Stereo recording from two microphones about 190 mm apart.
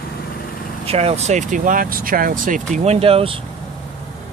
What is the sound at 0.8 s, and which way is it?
Speech, 30° right (ahead or behind).